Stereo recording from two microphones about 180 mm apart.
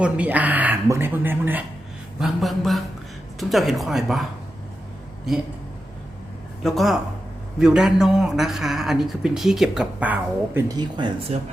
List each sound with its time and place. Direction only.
0.0 s a woman's voice: 10° right (ahead or behind)
6.6 s a man's voice: centre (ahead or behind)
10.7 s speech: 25° right (ahead or behind)